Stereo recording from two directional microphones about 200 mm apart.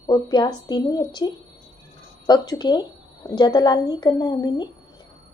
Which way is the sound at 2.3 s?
20° left (ahead or behind).